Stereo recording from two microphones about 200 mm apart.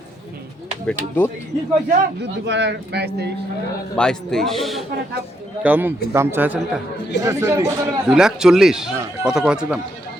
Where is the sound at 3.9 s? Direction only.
5° left (ahead or behind); by 7.7 s 15° right (ahead or behind).